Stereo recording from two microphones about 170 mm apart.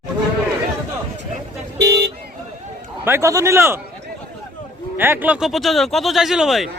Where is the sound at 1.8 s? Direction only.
90° right.